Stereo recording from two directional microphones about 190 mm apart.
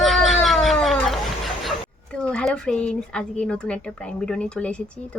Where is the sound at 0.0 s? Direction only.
Centre (ahead or behind).